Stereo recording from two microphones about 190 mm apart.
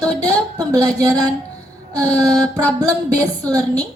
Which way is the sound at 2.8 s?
20° right (ahead or behind).